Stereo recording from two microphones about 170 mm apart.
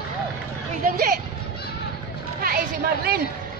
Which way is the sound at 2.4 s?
60° right (ahead or behind).